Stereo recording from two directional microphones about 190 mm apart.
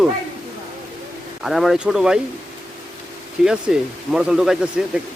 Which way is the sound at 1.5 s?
Centre (ahead or behind).